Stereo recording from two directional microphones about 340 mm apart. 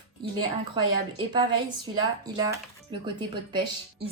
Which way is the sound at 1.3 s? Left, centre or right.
Centre.